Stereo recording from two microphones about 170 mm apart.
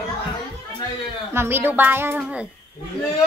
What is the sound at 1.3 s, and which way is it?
A woman's voice, 10° right (ahead or behind).